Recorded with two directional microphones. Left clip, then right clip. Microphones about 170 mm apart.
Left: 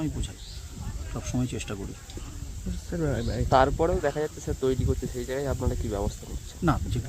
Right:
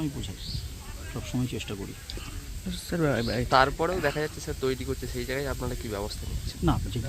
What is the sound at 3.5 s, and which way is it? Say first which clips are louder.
Speech: left 1 dB; 35° left (ahead or behind).